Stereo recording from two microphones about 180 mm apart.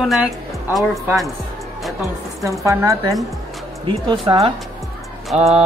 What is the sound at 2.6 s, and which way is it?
A woman's voice, 15° right (ahead or behind).